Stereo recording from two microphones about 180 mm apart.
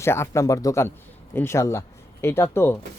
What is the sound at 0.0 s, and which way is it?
Speech, 15° left (ahead or behind).